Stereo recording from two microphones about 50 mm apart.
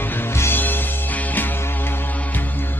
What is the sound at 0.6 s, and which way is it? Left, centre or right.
Music, left.